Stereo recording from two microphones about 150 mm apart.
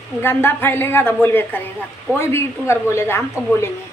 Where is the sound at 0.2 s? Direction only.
15° left (ahead or behind).